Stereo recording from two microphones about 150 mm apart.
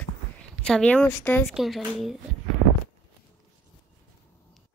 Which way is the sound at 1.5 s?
Centre (ahead or behind).